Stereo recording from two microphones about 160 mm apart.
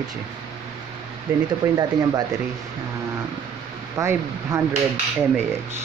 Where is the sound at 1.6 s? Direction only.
20° right (ahead or behind).